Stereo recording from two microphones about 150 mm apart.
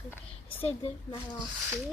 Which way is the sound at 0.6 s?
40° left (ahead or behind).